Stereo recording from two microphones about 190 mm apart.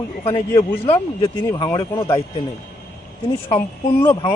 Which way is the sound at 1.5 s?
20° left (ahead or behind).